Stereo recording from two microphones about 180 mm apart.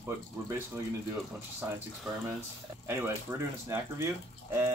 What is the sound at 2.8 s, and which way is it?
Speech, 15° right (ahead or behind).